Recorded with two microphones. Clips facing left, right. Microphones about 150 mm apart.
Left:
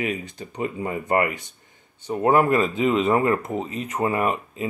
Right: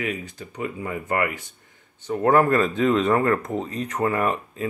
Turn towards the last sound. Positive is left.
turn(degrees=15)  # may be behind; listen again after turning